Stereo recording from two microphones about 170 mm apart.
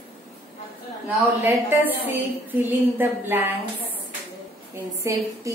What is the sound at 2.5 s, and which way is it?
A woman's voice, 10° right (ahead or behind).